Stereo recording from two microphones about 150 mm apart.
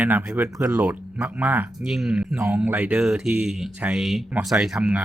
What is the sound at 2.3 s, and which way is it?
Speech, 20° right (ahead or behind).